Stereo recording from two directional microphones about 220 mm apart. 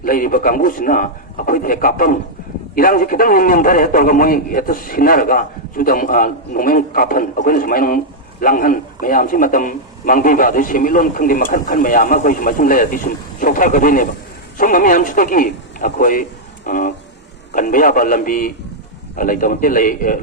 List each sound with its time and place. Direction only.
0.0 s a man's voice: 40° left (ahead or behind)